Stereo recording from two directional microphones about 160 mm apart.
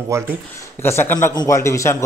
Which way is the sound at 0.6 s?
15° left (ahead or behind).